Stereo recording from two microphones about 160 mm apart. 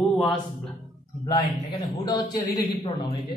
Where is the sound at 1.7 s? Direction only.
25° left (ahead or behind).